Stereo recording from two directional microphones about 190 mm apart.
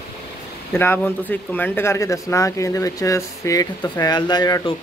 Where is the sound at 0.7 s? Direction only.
10° left (ahead or behind).